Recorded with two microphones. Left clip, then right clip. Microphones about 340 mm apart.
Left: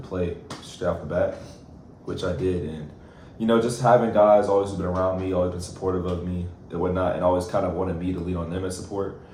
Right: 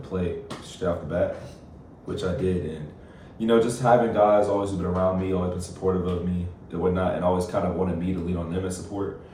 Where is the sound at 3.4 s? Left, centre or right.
Centre.